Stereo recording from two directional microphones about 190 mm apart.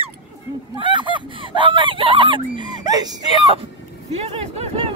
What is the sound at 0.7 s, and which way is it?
Speech, 25° right (ahead or behind).